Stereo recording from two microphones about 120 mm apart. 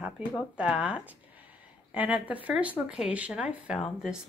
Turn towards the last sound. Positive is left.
turn(degrees=-5)  # may be behind; listen again after turning